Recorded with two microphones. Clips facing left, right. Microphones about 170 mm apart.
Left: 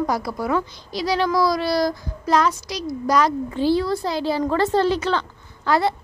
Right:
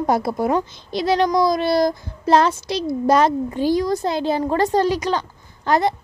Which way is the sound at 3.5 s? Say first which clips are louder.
Left 2 dB; 15° right (ahead or behind).